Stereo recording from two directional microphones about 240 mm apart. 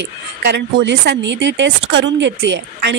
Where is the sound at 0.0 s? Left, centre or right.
Right.